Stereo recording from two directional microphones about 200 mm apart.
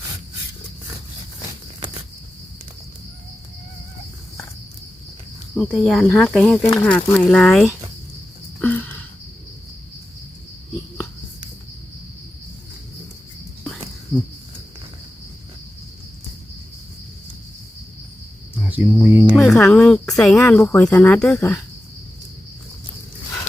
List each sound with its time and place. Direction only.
5.5 s speech: centre (ahead or behind)
8.6 s a sound: 10° left (ahead or behind)
18.7 s cricket: 10° right (ahead or behind)
19.4 s music: 5° left (ahead or behind)
20.1 s a woman's voice: centre (ahead or behind)